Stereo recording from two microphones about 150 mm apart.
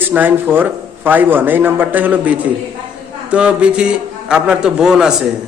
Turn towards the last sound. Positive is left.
turn(degrees=-5)  # may be behind; listen again after turning